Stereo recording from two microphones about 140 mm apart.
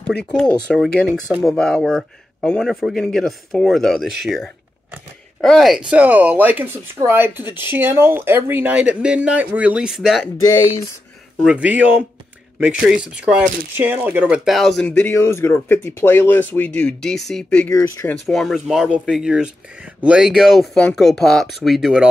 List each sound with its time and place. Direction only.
0.0 s speech: 5° left (ahead or behind)
11.4 s speech: 10° right (ahead or behind)
14.9 s speech: 15° left (ahead or behind)
17.7 s speech: 25° left (ahead or behind)
18.0 s speech: 5° left (ahead or behind)